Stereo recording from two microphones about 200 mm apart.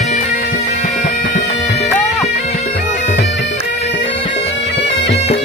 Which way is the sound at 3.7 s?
35° left (ahead or behind).